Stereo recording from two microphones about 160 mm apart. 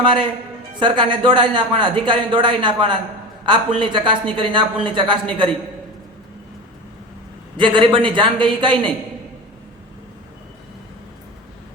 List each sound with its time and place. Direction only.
0.0 s speech: 30° right (ahead or behind)
7.5 s speech: 30° right (ahead or behind)